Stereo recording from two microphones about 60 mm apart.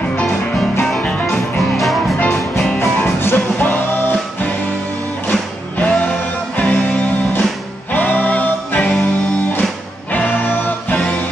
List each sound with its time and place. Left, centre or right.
1.6 s music: centre
3.0 s music: left
3.5 s music: left
10.1 s music: left